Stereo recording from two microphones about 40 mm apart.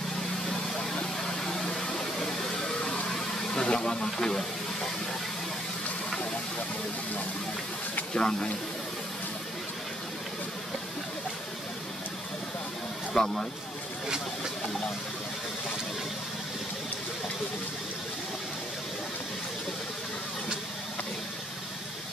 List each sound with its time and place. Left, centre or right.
1.2 s a sound: centre
3.5 s speech: left
8.1 s speech: left
13.1 s speech: centre